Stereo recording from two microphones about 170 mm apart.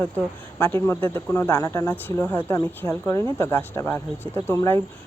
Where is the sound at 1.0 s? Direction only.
15° left (ahead or behind).